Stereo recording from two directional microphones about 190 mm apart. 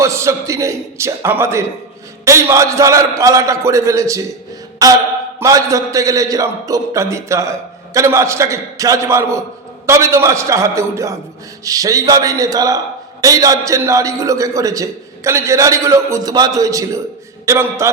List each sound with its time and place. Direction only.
0.0 s a man's voice: 15° right (ahead or behind)
4.8 s mantra: 20° right (ahead or behind)
5.4 s a man's voice: 15° right (ahead or behind)